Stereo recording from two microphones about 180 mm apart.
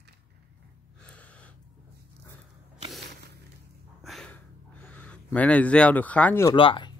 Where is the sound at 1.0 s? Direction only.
5° left (ahead or behind).